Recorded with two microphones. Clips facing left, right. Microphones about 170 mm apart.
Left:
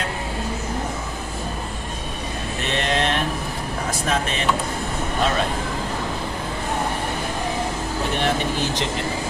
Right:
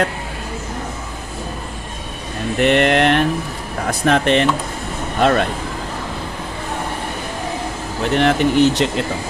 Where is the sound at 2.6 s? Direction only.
65° right (ahead or behind).